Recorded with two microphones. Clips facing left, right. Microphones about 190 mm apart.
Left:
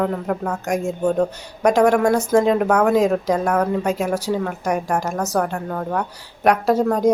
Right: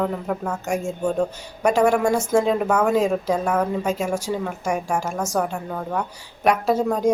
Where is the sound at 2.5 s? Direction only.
5° left (ahead or behind).